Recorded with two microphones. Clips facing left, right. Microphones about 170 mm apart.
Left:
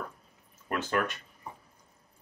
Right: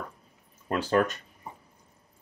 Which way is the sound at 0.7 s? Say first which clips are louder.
Right 5 dB; 35° right (ahead or behind).